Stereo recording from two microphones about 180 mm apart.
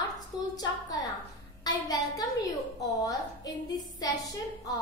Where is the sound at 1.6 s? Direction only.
20° left (ahead or behind).